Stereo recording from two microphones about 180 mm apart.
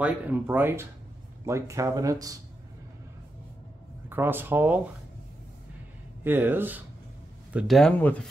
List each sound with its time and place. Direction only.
0.0 s speech: 10° right (ahead or behind)
4.1 s speech: 10° right (ahead or behind)
6.2 s speech: 10° right (ahead or behind); by 8.3 s 5° left (ahead or behind)